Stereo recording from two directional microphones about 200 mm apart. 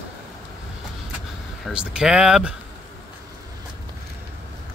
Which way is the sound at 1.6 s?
5° right (ahead or behind).